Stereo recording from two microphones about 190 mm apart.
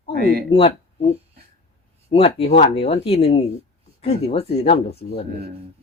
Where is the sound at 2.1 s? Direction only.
30° left (ahead or behind).